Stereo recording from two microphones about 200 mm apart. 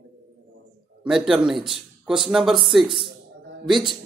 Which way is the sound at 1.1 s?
Centre (ahead or behind).